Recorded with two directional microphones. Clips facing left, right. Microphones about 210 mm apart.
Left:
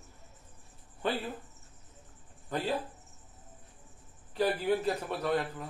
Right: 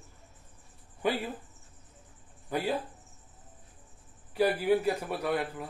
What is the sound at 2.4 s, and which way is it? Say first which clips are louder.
Speech: right 2 dB; 10° right (ahead or behind).